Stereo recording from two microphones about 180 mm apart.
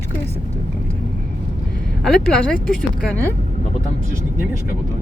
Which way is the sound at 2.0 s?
5° left (ahead or behind).